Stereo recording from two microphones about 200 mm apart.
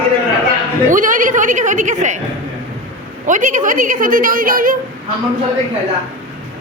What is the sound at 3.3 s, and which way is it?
A woman's voice, 40° right (ahead or behind).